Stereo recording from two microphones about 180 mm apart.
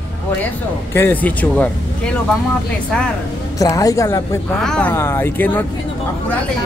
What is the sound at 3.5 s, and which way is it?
Speech, 20° left (ahead or behind).